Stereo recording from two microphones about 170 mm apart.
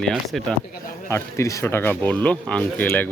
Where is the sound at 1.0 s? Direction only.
15° left (ahead or behind).